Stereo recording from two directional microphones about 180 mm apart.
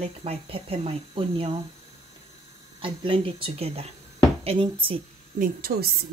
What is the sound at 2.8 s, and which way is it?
A woman's voice, 30° right (ahead or behind).